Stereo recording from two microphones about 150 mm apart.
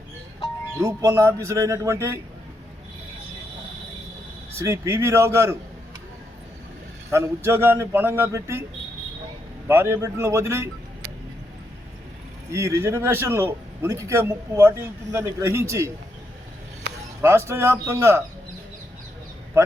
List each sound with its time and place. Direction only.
0.8 s a man's voice: 20° right (ahead or behind)
4.5 s a man's voice: 20° right (ahead or behind)
7.1 s a man's voice: 15° right (ahead or behind)
9.6 s a man's voice: 15° right (ahead or behind)
12.5 s a man's voice: 20° right (ahead or behind)
17.2 s a man's voice: 20° right (ahead or behind)